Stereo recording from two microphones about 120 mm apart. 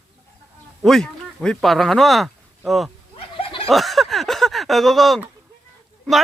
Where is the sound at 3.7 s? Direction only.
Centre (ahead or behind).